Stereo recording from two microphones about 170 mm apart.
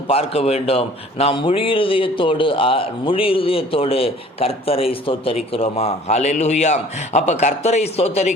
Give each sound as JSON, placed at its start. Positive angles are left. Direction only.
{"t": 0.1, "sound": "a man's voice", "side_deg": 35}